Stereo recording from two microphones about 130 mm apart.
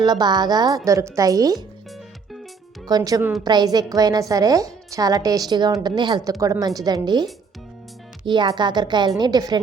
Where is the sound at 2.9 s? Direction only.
30° right (ahead or behind).